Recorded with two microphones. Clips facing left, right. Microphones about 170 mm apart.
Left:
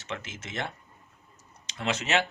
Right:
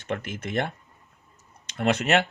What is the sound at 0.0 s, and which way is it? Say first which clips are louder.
Speech: right 7 dB; 55° right (ahead or behind).